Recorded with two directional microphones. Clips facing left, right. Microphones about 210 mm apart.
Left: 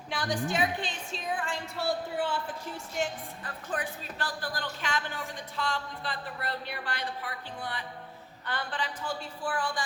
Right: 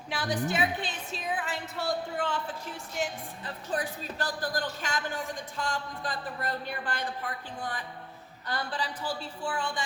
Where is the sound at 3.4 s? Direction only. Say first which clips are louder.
Right 3 dB; 35° right (ahead or behind).